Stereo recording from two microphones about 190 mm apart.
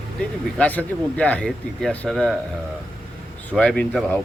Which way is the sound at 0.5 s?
5° left (ahead or behind).